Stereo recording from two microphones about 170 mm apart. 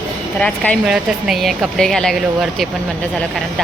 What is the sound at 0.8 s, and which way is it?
A woman's voice, centre (ahead or behind).